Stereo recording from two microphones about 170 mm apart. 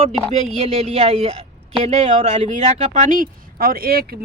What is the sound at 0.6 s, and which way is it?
Speech, 40° right (ahead or behind).